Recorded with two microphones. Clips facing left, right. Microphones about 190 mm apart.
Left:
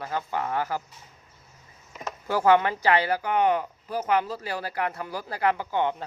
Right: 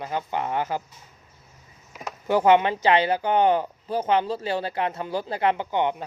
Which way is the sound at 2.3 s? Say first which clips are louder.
Right 3 dB; 20° right (ahead or behind).